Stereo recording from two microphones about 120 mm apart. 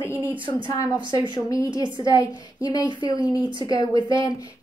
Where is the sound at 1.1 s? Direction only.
35° left (ahead or behind).